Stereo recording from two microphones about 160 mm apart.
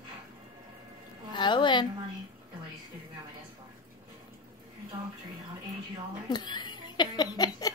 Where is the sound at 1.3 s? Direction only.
30° left (ahead or behind).